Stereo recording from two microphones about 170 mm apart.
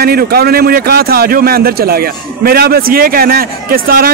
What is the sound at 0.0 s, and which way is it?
A man's voice, 65° right (ahead or behind).